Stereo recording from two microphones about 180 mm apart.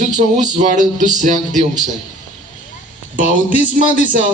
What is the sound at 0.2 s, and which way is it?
A man's voice, 40° right (ahead or behind).